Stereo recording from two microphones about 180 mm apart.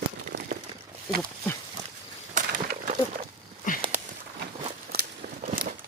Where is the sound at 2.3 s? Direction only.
45° right (ahead or behind).